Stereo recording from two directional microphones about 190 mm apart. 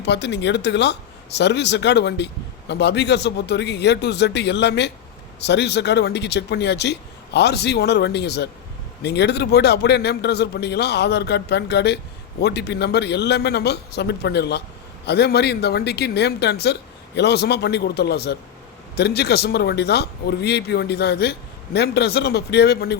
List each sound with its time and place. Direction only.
0.0 s speech: 65° left (ahead or behind)